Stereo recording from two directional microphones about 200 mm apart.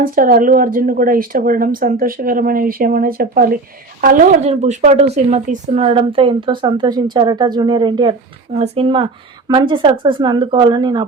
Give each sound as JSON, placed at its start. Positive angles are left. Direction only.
{"t": 0.0, "sound": "speech", "side_deg": -45}